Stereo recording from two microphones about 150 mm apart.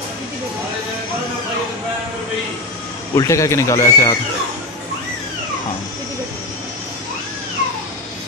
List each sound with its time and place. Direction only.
3.2 s speech: 20° left (ahead or behind)